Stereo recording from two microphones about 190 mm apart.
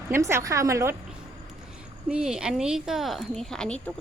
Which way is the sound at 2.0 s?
5° right (ahead or behind).